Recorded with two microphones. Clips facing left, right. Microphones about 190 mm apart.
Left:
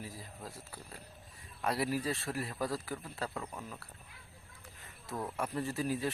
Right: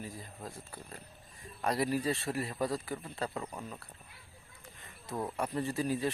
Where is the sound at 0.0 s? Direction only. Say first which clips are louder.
Right 2 dB; 5° left (ahead or behind).